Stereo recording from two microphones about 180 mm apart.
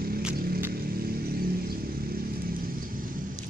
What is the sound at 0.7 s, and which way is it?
Vehicle, 55° right (ahead or behind).